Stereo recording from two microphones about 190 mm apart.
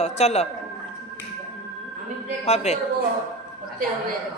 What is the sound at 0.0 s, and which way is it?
Speech, 35° left (ahead or behind).